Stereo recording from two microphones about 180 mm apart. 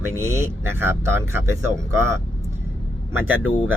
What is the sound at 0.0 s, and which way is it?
Speech, 15° right (ahead or behind).